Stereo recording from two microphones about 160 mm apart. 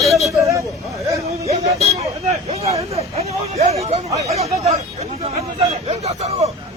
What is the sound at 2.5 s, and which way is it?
Speech, 40° right (ahead or behind).